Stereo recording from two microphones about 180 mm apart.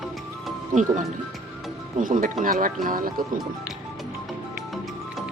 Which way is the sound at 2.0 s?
50° right (ahead or behind).